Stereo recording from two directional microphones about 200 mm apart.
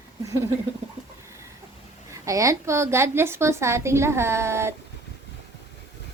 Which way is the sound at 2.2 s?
15° right (ahead or behind).